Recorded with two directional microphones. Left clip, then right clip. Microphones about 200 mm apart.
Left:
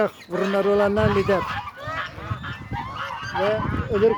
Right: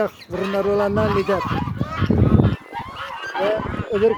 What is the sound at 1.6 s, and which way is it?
Fowl, 55° right (ahead or behind).